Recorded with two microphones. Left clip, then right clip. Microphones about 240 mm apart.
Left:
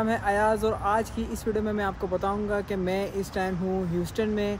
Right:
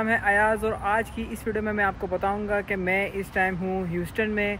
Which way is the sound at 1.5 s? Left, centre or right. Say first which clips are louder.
Right 3 dB; centre.